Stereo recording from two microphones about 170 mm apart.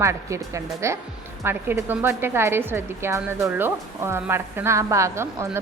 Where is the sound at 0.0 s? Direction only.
15° right (ahead or behind).